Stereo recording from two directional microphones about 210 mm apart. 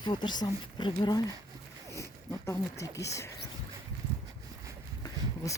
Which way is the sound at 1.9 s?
15° left (ahead or behind).